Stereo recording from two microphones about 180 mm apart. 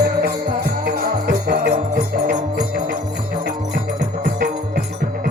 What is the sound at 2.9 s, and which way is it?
Music, 60° right (ahead or behind).